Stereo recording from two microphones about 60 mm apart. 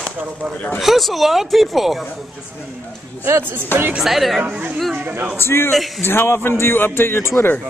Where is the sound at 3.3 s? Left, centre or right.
Right.